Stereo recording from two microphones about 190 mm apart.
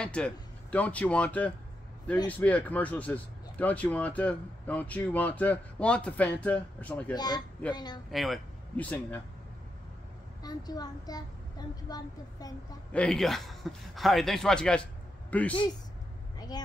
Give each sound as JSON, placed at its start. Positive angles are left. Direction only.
{"t": 0.0, "sound": "speech", "side_deg": 5}
{"t": 7.2, "sound": "speech", "side_deg": 20}
{"t": 8.1, "sound": "speech", "side_deg": 0}
{"t": 10.4, "sound": "speech", "side_deg": 20}
{"t": 12.9, "sound": "a man's voice", "side_deg": 5}
{"t": 16.3, "sound": "vehicle", "side_deg": 20}